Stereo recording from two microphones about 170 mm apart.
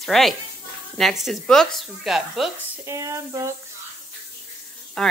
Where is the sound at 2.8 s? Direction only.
15° right (ahead or behind).